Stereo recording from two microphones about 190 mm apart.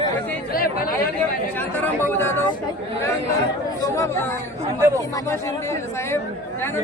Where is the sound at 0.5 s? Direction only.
50° left (ahead or behind).